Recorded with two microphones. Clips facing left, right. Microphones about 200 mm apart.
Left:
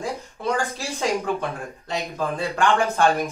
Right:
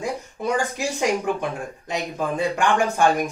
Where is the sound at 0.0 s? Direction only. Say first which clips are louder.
Right 1 dB; 15° right (ahead or behind).